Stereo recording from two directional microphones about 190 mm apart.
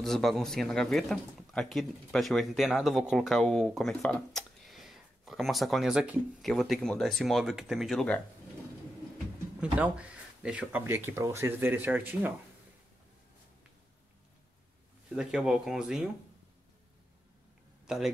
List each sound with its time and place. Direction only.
0.0 s speech: centre (ahead or behind)
9.6 s speech: 5° right (ahead or behind)
15.0 s speech: 5° right (ahead or behind)
17.8 s a man's voice: centre (ahead or behind)